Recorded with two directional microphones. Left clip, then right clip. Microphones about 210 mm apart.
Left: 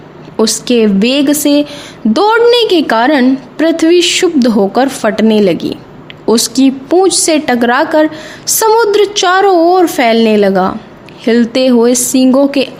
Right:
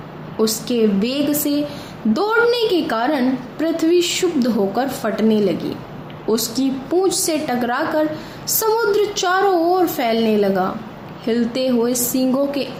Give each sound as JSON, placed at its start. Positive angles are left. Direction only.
{"t": 0.3, "sound": "a woman's voice", "side_deg": 45}